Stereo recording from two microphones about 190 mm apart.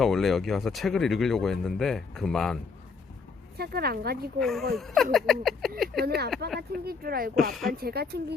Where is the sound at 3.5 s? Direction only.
55° right (ahead or behind).